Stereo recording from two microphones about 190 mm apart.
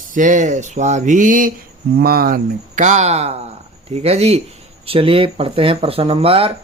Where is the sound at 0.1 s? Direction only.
40° right (ahead or behind).